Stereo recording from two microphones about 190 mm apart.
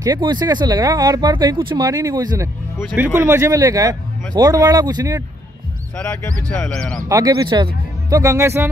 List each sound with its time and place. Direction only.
0.0 s speech: 20° right (ahead or behind)
6.4 s speech: 5° left (ahead or behind)
7.1 s speech: 20° right (ahead or behind)